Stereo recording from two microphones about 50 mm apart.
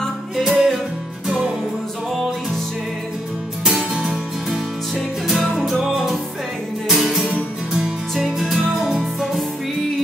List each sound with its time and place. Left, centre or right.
0.5 s music: centre
3.7 s music: centre
6.9 s music: centre